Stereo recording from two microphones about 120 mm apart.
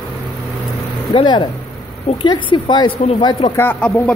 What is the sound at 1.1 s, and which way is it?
Speech, 40° left (ahead or behind).